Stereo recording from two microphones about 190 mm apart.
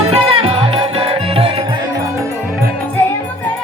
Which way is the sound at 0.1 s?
30° right (ahead or behind).